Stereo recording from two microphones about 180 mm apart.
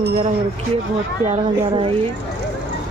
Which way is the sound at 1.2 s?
35° right (ahead or behind).